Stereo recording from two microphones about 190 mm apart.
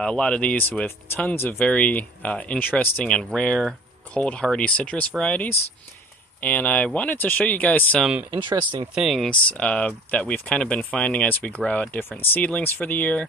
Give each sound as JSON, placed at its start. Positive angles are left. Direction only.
{"t": 0.0, "sound": "speech", "side_deg": 5}
{"t": 8.3, "sound": "speech", "side_deg": -25}
{"t": 8.9, "sound": "speech", "side_deg": 0}